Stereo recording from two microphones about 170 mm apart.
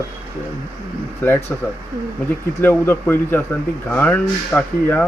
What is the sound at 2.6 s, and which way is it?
Speech, 15° left (ahead or behind).